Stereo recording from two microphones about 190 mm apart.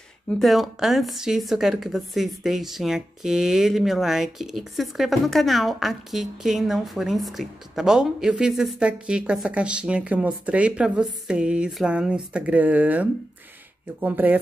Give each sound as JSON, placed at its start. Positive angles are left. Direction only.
{"t": 0.3, "sound": "speech", "side_deg": 0}